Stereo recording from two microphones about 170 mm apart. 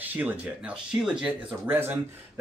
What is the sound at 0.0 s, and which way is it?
Speech, 10° right (ahead or behind).